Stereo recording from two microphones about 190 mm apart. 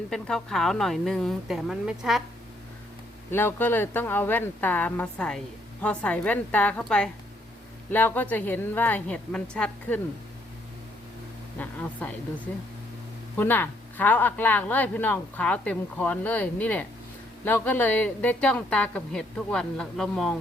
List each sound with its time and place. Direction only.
0.1 s a woman's voice: 5° left (ahead or behind)
3.3 s speech: 10° left (ahead or behind)
11.5 s speech: 10° left (ahead or behind)
13.3 s speech: 10° left (ahead or behind)